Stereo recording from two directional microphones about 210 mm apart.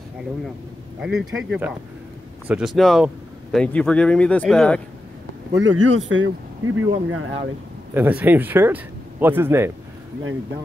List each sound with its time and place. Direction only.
1.0 s speech: 5° right (ahead or behind)
5.7 s speech: 65° right (ahead or behind)
7.9 s speech: 10° right (ahead or behind)